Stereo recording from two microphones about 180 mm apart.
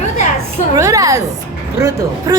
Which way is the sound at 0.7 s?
15° right (ahead or behind).